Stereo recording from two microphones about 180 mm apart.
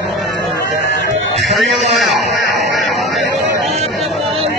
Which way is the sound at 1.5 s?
Centre (ahead or behind).